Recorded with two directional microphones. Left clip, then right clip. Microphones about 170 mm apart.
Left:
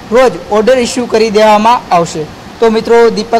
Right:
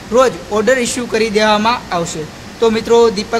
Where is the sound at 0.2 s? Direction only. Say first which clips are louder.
Left 4 dB; 15° left (ahead or behind).